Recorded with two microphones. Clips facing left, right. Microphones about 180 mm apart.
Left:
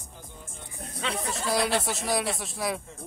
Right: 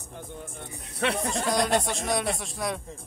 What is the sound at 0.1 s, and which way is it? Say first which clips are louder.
Music: right 9 dB; 60° right (ahead or behind).